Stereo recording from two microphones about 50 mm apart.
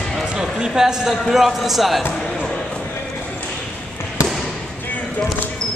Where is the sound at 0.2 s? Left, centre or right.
Centre.